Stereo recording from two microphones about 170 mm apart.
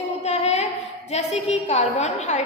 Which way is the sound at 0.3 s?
40° left (ahead or behind).